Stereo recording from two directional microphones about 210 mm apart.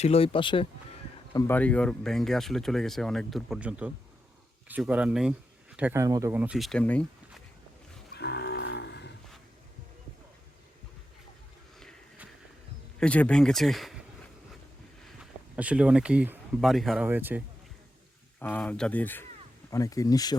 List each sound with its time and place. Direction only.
0.0 s speech: 30° left (ahead or behind)
1.3 s speech: 15° left (ahead or behind)
8.1 s cattle: 50° left (ahead or behind)
11.8 s a sound: centre (ahead or behind)
13.0 s speech: 5° left (ahead or behind)
15.0 s speech: 5° right (ahead or behind)
18.3 s speech: 10° left (ahead or behind)